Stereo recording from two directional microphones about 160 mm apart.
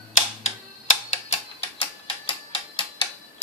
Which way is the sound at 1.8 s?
35° left (ahead or behind).